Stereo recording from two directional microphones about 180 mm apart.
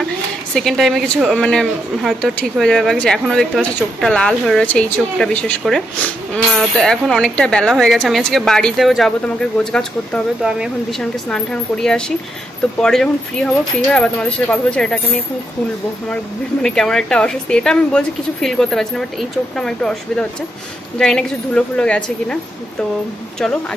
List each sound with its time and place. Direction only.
0.6 s speech: centre (ahead or behind)
16.6 s speech: 5° left (ahead or behind)